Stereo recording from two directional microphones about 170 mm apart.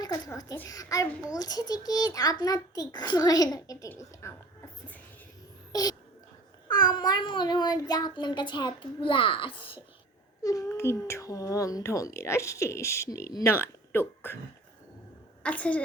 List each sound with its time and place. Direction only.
0.0 s a child's voice: 20° left (ahead or behind)
5.7 s babbling: 20° left (ahead or behind)
6.7 s a child's voice: 25° left (ahead or behind)
10.4 s speech: 20° left (ahead or behind)
15.4 s speech: 10° left (ahead or behind)